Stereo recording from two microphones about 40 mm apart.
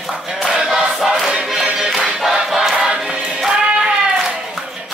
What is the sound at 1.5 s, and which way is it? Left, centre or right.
Music, centre.